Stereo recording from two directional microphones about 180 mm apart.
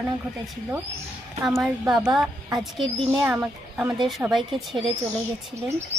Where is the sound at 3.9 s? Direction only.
Centre (ahead or behind).